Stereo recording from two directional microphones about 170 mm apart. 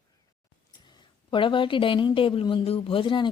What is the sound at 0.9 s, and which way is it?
A woman's voice, 30° left (ahead or behind).